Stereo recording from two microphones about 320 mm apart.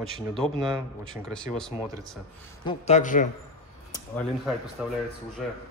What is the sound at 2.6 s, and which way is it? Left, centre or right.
Speech, left.